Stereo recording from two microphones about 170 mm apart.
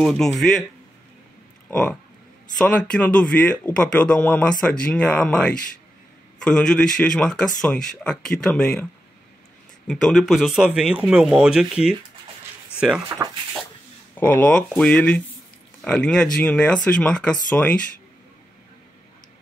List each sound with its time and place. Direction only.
0.0 s a man's voice: centre (ahead or behind)
1.7 s a man's voice: 5° left (ahead or behind)
9.8 s a man's voice: 5° left (ahead or behind)
13.2 s speech: 20° right (ahead or behind)
14.1 s a man's voice: 10° left (ahead or behind)